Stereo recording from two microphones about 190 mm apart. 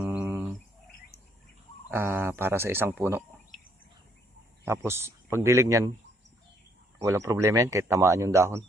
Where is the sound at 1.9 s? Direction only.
10° right (ahead or behind).